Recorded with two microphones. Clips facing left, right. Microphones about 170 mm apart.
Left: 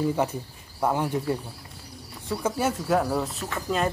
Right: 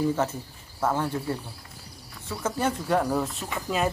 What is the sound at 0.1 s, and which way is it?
Speech, 15° left (ahead or behind).